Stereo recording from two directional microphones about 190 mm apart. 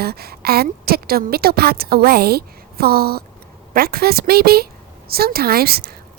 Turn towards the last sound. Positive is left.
turn(degrees=-55)  # may be behind; listen again after turning